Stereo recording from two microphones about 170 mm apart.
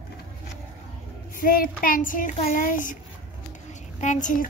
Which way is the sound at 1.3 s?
55° left (ahead or behind).